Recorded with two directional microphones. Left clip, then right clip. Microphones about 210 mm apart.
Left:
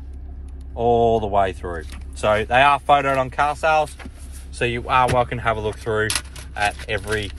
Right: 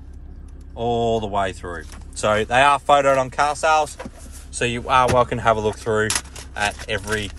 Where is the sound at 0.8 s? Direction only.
5° right (ahead or behind).